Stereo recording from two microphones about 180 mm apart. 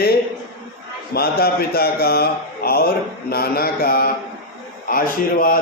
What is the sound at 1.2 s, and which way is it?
A man's voice, 60° left (ahead or behind).